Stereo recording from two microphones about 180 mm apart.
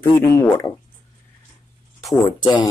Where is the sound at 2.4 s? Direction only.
25° left (ahead or behind).